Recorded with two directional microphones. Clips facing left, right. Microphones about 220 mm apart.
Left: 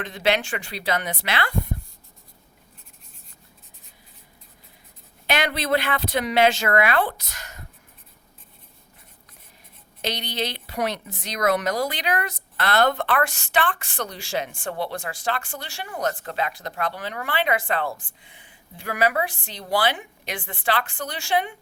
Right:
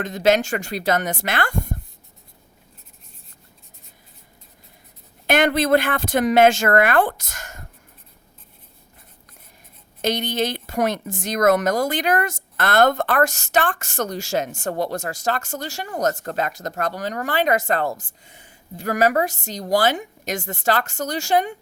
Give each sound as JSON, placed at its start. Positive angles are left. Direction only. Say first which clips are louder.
{"t": 0.0, "sound": "a woman's voice", "louder": "right 5 dB", "side_deg": -45}
{"t": 5.2, "sound": "a woman's voice", "louder": "right 7 dB", "side_deg": -50}
{"t": 10.0, "sound": "a woman's voice", "louder": "right 6 dB", "side_deg": -50}